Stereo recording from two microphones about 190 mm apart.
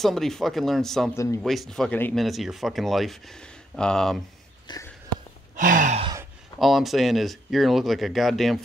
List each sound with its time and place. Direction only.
0.0 s speech: centre (ahead or behind)
1.1 s speech: 15° left (ahead or behind)
1.4 s speech: centre (ahead or behind)
4.6 s sniff: 15° left (ahead or behind)
5.6 s sigh: 45° right (ahead or behind)
6.6 s speech: centre (ahead or behind)